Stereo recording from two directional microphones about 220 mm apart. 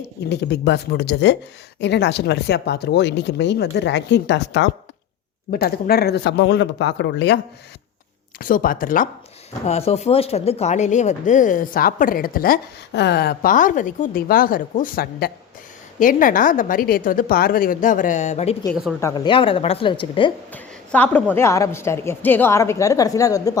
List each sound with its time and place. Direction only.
0.0 s speech: 50° left (ahead or behind)
8.4 s speech: 40° left (ahead or behind)
9.6 s speech: 30° left (ahead or behind)
18.7 s a woman's voice: centre (ahead or behind)
18.9 s a woman's voice: 15° left (ahead or behind)
20.5 s a woman's voice: 10° left (ahead or behind)